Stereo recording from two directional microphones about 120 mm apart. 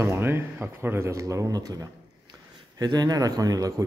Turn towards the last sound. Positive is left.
turn(degrees=-30)  # may be behind; listen again after turning